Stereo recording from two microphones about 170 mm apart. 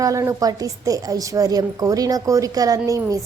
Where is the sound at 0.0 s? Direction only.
20° right (ahead or behind).